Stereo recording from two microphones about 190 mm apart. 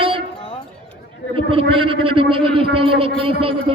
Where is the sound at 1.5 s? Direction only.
30° right (ahead or behind).